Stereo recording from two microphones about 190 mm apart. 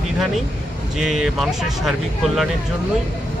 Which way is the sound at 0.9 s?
Centre (ahead or behind).